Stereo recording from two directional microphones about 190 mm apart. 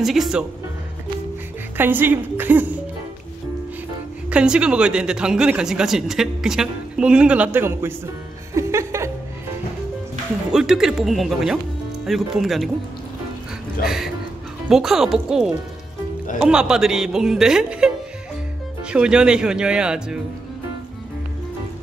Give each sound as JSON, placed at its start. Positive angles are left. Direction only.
{"t": 0.0, "sound": "speech", "side_deg": 0}
{"t": 1.8, "sound": "a woman's voice", "side_deg": -10}
{"t": 4.3, "sound": "speech", "side_deg": -5}
{"t": 8.5, "sound": "music", "side_deg": -15}
{"t": 10.5, "sound": "speech", "side_deg": -5}
{"t": 13.8, "sound": "music", "side_deg": 0}
{"t": 14.7, "sound": "speech", "side_deg": 0}